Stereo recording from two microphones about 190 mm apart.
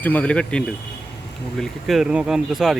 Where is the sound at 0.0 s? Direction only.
10° left (ahead or behind).